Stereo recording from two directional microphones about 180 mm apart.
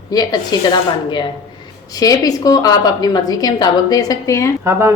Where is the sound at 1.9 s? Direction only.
20° left (ahead or behind).